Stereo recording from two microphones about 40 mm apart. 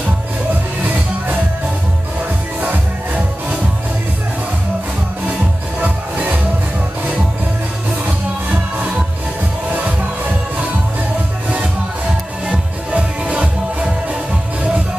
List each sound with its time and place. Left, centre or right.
5.8 s music: right
12.4 s music: right